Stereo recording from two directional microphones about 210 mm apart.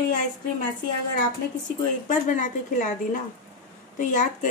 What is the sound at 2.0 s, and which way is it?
A woman's voice, 40° left (ahead or behind).